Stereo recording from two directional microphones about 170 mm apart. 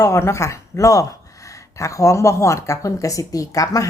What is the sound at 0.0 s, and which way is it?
Speech, 15° left (ahead or behind).